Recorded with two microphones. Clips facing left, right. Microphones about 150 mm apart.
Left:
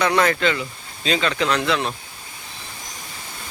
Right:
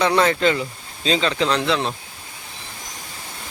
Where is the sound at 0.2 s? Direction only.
25° right (ahead or behind).